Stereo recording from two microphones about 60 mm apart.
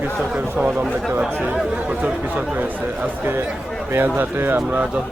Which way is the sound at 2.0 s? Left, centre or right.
Right.